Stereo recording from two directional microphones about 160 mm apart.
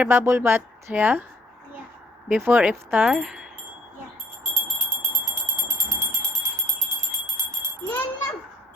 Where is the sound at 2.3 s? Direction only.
10° right (ahead or behind).